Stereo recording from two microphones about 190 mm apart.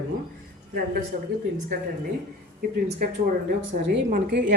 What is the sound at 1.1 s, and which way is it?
Speech, 45° right (ahead or behind).